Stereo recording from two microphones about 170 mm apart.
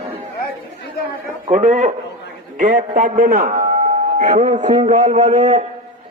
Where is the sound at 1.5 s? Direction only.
45° right (ahead or behind).